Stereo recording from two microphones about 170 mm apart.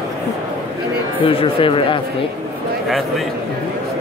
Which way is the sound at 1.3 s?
30° left (ahead or behind).